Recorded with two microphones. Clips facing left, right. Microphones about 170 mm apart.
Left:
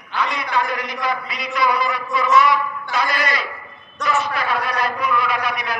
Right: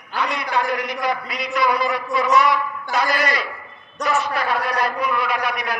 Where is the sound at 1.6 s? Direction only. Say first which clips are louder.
Even; 45° right (ahead or behind).